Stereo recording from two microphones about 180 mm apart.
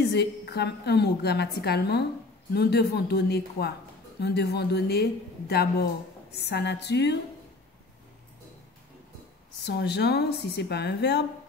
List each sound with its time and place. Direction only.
0.0 s a woman's voice: 65° left (ahead or behind)
9.7 s a woman's voice: 65° left (ahead or behind)